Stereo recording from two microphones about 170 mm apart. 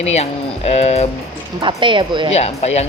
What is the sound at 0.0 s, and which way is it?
Speech, 40° left (ahead or behind).